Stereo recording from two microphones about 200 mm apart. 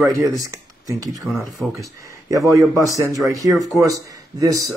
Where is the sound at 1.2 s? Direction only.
Centre (ahead or behind).